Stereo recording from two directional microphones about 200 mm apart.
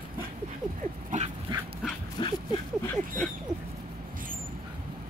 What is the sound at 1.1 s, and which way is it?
Dog, 40° right (ahead or behind).